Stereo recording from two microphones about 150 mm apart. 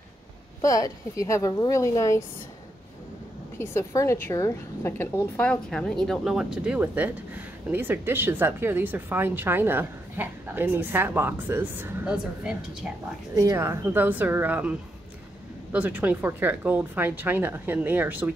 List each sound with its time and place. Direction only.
0.6 s a woman's voice: 20° left (ahead or behind)
3.5 s a woman's voice: 15° left (ahead or behind)
5.4 s speech: 5° left (ahead or behind)
13.3 s speech: 20° right (ahead or behind)